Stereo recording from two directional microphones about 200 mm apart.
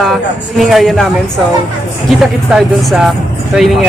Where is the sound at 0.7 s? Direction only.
Centre (ahead or behind).